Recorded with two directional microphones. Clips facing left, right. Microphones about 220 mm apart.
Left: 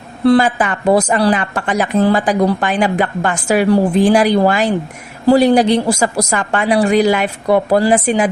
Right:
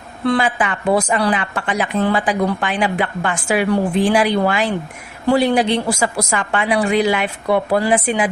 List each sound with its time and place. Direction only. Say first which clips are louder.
0.3 s a woman's voice: left 6 dB; 40° left (ahead or behind)